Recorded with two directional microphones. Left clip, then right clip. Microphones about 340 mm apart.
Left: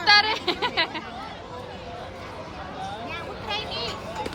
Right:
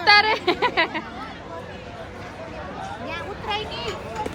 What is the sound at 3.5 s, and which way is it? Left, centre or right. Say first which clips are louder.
Vehicle: right 2 dB; right.